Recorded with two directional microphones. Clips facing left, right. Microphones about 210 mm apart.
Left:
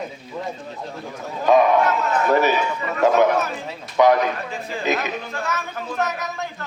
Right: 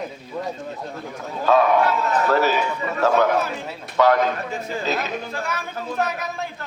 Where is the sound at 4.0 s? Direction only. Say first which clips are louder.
Left 1 dB; 15° left (ahead or behind).